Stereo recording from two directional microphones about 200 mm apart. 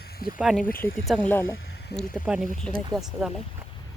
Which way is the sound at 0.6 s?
45° left (ahead or behind).